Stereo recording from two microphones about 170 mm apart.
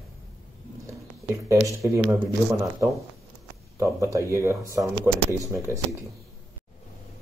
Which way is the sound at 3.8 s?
15° right (ahead or behind).